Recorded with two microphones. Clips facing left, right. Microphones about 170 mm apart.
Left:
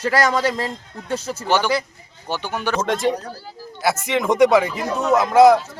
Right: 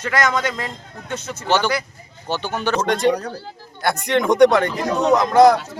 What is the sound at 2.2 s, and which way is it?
Speech, 10° left (ahead or behind).